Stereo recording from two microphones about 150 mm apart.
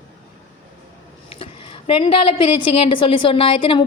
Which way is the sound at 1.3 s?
40° left (ahead or behind).